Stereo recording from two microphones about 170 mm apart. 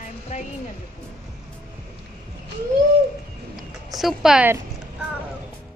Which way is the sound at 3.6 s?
Centre (ahead or behind).